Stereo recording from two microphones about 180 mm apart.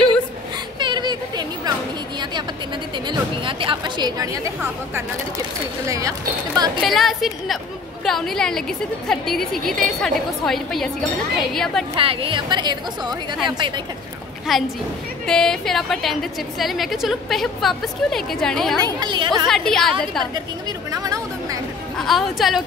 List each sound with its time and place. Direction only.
0.7 s a sound: 25° right (ahead or behind)
3.1 s speech: 30° right (ahead or behind)
5.9 s a woman's voice: 20° right (ahead or behind)
6.8 s a woman's voice: centre (ahead or behind)
11.9 s a woman's voice: 30° right (ahead or behind)
14.5 s a woman's voice: centre (ahead or behind)
18.9 s a woman's voice: 25° right (ahead or behind)
19.4 s a woman's voice: centre (ahead or behind)
20.9 s chatter: 20° right (ahead or behind)
21.9 s a woman's voice: centre (ahead or behind)